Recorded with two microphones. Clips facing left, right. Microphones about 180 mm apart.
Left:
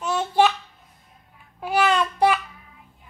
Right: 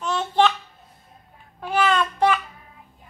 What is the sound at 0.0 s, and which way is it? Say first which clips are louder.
Child singing: left 1 dB; 10° left (ahead or behind).